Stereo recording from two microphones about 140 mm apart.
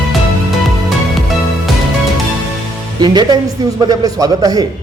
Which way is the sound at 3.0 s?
30° right (ahead or behind).